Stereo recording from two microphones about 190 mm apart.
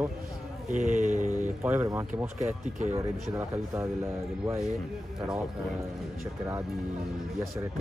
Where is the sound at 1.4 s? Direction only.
10° right (ahead or behind).